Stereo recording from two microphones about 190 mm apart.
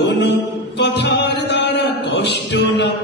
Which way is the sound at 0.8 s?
65° left (ahead or behind).